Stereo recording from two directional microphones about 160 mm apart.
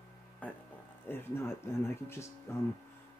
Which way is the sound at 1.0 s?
15° left (ahead or behind).